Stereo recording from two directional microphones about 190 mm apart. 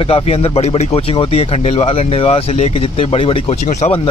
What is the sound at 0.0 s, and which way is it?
Speech, 30° left (ahead or behind).